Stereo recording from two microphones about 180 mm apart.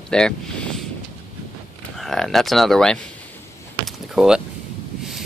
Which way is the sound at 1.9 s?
Centre (ahead or behind).